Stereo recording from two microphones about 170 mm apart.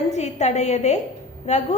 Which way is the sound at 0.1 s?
40° left (ahead or behind).